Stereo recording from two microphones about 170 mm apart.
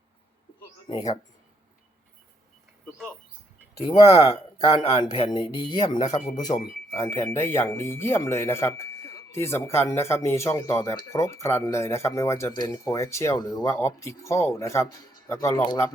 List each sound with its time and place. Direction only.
0.9 s speech: 20° left (ahead or behind)
4.6 s a man's voice: 40° left (ahead or behind)
5.3 s speech: 25° left (ahead or behind)
6.1 s a man's voice: 40° left (ahead or behind)
6.4 s speech: 20° left (ahead or behind)